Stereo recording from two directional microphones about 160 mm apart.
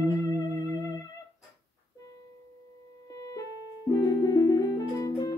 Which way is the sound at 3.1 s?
20° left (ahead or behind).